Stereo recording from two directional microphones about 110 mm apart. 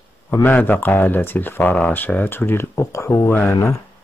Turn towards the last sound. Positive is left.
turn(degrees=20)  # may be behind; listen again after turning